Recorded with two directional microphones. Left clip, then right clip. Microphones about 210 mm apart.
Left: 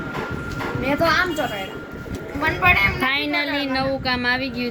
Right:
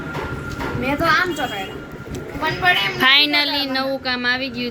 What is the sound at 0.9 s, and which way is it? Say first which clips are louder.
Speech: right 2 dB; 45° left (ahead or behind).